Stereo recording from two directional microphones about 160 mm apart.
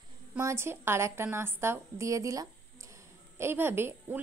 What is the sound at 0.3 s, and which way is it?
A woman's voice, 15° right (ahead or behind).